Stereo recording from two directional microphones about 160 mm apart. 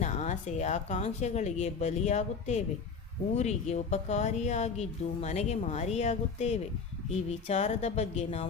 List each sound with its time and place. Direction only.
0.0 s a woman's voice: 45° left (ahead or behind)